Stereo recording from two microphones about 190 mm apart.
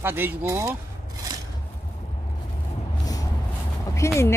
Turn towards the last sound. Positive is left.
turn(degrees=15)  # may be behind; listen again after turning